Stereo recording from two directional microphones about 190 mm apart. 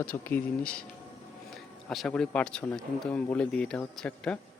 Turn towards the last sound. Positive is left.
turn(degrees=5)  # may be behind; listen again after turning